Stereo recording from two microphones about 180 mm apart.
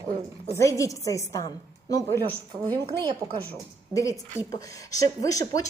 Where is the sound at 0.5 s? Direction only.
15° left (ahead or behind).